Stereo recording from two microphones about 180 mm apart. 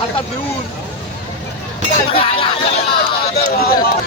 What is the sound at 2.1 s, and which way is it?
Speech, 30° left (ahead or behind).